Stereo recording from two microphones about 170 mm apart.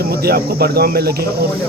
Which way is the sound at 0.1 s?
65° right (ahead or behind).